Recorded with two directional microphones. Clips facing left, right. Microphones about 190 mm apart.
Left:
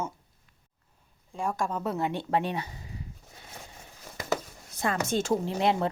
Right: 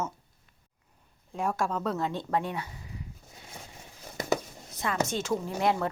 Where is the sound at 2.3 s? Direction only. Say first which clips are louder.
Left 2 dB; 25° left (ahead or behind).